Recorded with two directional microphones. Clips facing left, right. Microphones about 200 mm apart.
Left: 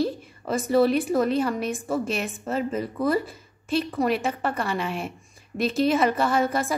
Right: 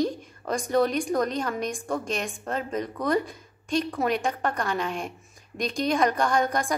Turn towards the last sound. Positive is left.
turn(degrees=5)  # may be behind; listen again after turning